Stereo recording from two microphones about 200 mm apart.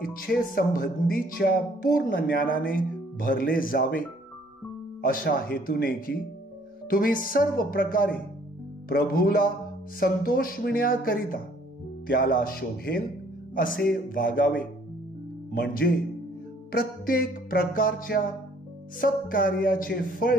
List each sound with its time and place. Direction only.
0.0 s speech: 45° left (ahead or behind)
5.0 s speech: 45° left (ahead or behind)